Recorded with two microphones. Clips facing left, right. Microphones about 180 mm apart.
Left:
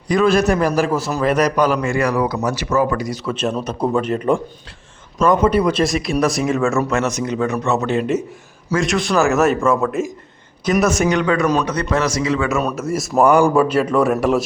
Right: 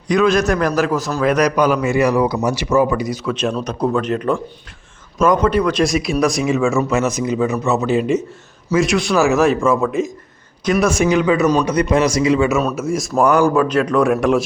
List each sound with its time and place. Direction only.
0.1 s a man's voice: 5° left (ahead or behind); by 3.2 s 10° right (ahead or behind)
3.2 s a man's voice: 5° left (ahead or behind); by 12.5 s 15° right (ahead or behind)
12.5 s a man's voice: 5° right (ahead or behind)